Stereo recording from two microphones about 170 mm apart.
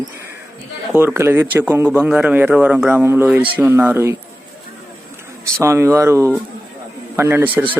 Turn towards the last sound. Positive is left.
turn(degrees=-10)  # may be behind; listen again after turning